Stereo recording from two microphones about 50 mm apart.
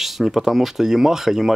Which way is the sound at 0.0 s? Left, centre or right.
Centre.